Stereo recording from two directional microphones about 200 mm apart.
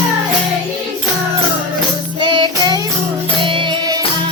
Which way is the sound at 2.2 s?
25° right (ahead or behind).